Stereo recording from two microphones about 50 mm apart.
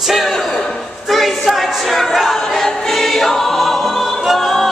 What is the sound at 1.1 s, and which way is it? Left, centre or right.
Choir, centre.